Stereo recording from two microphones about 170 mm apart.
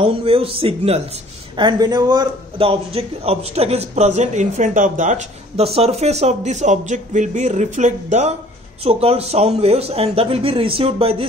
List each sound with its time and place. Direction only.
0.0 s a man's voice: 35° right (ahead or behind)